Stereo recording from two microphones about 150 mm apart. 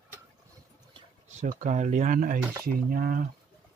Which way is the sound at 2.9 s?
70° right (ahead or behind).